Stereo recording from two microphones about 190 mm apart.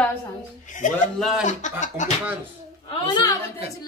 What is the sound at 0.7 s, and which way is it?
Speech, 40° left (ahead or behind).